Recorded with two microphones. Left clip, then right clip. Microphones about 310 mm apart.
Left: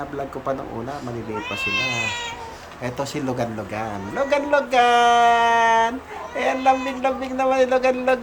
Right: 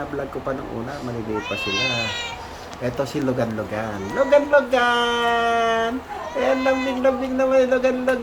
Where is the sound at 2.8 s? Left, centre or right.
Centre.